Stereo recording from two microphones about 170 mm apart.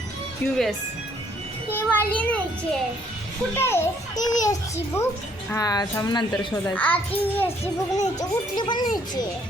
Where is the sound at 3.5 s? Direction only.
15° left (ahead or behind).